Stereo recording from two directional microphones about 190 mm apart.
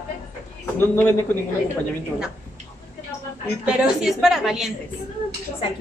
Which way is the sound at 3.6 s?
Centre (ahead or behind).